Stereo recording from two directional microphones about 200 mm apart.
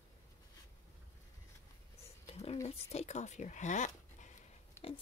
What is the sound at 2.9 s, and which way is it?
Speech, 35° left (ahead or behind).